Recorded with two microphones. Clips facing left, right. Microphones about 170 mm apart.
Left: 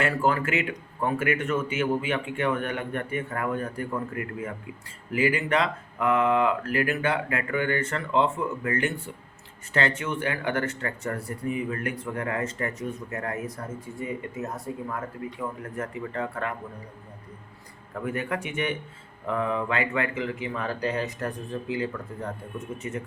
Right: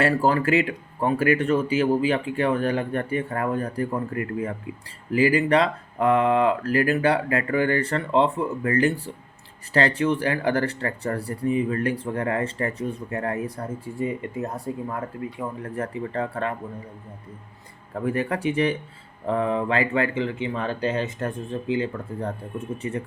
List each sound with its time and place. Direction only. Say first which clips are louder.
0.0 s speech: right 4 dB; 35° right (ahead or behind)
18.0 s speech: right 6 dB; 35° right (ahead or behind)